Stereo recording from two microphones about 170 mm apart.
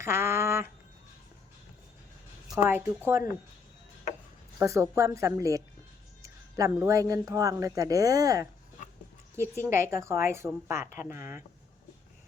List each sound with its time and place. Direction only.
0.0 s a sound: 15° right (ahead or behind)
2.6 s a woman's voice: 15° right (ahead or behind)
4.6 s a woman's voice: 15° right (ahead or behind)
9.6 s a woman's voice: 15° right (ahead or behind)